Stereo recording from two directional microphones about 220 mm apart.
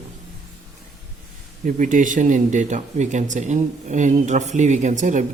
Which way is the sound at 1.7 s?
35° right (ahead or behind).